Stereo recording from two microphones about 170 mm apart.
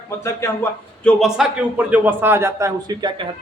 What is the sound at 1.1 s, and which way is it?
A man's voice, centre (ahead or behind).